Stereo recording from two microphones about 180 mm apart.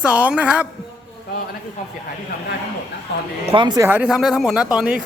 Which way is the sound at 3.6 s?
25° right (ahead or behind).